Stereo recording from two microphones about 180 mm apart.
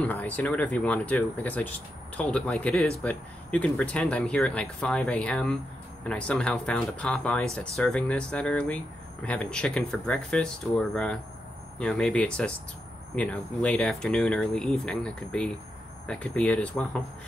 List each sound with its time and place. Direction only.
0.0 s speech: 10° left (ahead or behind)